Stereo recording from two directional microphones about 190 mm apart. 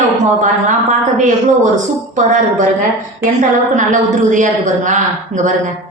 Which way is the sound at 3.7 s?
40° right (ahead or behind).